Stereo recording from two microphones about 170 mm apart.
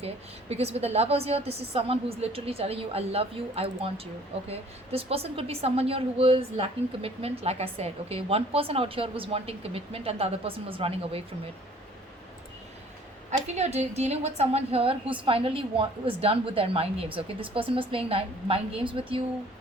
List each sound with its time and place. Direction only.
0.0 s a woman's voice: 40° right (ahead or behind)
13.6 s a woman's voice: 40° right (ahead or behind)